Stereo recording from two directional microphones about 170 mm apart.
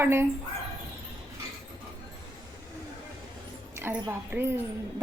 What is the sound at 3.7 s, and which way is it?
Speech, 15° right (ahead or behind).